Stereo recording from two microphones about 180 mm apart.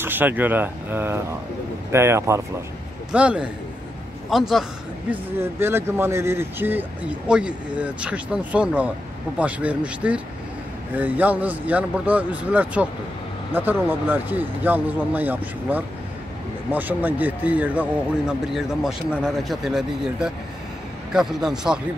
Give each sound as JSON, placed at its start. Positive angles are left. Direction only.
{"t": 0.0, "sound": "speech", "side_deg": -10}
{"t": 5.1, "sound": "speech", "side_deg": -15}